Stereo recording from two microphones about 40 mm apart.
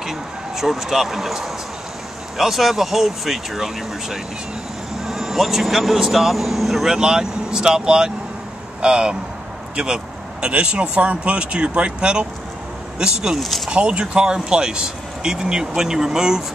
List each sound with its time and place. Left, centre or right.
0.0 s speech: centre
10.4 s speech: right
13.7 s speech: right; by 16.4 s centre